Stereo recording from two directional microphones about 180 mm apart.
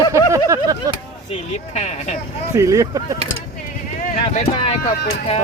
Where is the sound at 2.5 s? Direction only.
15° right (ahead or behind).